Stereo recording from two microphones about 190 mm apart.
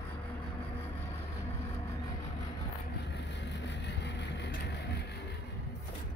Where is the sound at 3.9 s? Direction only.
65° left (ahead or behind).